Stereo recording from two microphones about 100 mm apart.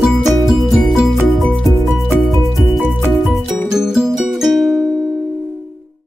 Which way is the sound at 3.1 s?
Centre (ahead or behind).